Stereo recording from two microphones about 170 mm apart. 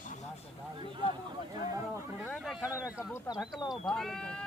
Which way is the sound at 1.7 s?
15° right (ahead or behind).